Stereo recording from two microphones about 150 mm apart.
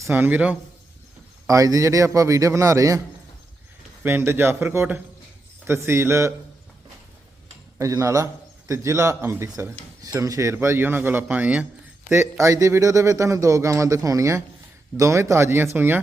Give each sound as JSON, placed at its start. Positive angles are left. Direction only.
{"t": 0.0, "sound": "a man's voice", "side_deg": -15}
{"t": 1.5, "sound": "a man's voice", "side_deg": -20}
{"t": 4.0, "sound": "a man's voice", "side_deg": -15}
{"t": 7.8, "sound": "a man's voice", "side_deg": -20}